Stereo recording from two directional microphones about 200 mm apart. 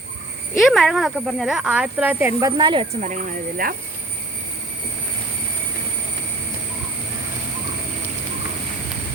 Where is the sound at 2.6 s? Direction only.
25° right (ahead or behind).